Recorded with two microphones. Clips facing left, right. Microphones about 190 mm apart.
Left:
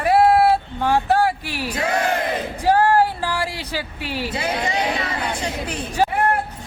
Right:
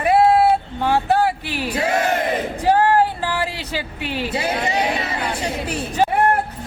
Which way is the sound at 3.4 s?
15° left (ahead or behind).